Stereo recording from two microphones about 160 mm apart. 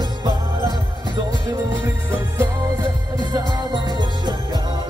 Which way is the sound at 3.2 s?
25° right (ahead or behind).